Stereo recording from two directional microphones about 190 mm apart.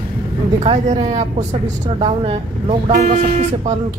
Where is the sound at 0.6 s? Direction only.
35° right (ahead or behind).